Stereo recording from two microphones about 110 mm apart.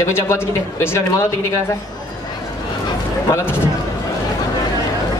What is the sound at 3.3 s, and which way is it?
Speech, 20° left (ahead or behind).